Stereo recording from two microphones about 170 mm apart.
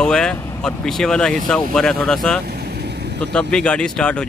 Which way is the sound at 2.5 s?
65° right (ahead or behind).